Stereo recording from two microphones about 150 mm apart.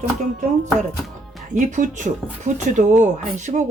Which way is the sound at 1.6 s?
55° right (ahead or behind).